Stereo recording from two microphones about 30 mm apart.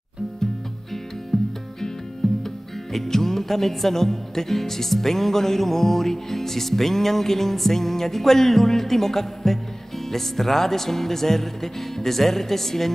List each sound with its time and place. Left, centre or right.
1.3 s music: centre